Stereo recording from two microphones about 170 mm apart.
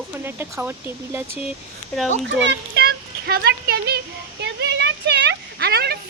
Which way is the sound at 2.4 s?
75° right (ahead or behind).